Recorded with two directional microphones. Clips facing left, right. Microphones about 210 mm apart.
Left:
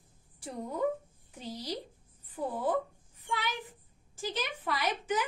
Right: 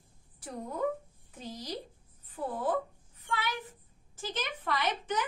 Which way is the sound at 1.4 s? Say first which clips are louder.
Left 1 dB; 10° left (ahead or behind).